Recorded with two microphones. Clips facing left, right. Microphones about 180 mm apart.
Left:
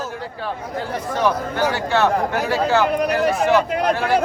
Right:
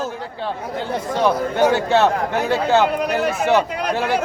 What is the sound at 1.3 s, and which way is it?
A man's voice, 25° right (ahead or behind).